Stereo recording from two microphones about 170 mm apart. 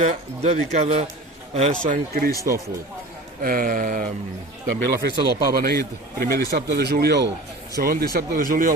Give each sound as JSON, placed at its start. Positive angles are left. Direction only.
{"t": 0.0, "sound": "a man's voice", "side_deg": -40}
{"t": 3.4, "sound": "speech", "side_deg": -55}
{"t": 4.6, "sound": "speech", "side_deg": -65}
{"t": 7.8, "sound": "speech", "side_deg": -60}